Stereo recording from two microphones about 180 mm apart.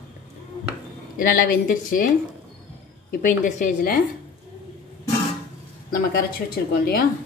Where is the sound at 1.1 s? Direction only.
50° left (ahead or behind).